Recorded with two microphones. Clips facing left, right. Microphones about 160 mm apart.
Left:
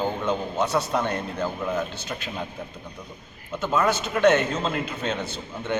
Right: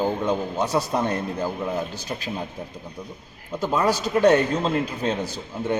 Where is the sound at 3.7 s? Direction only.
35° right (ahead or behind).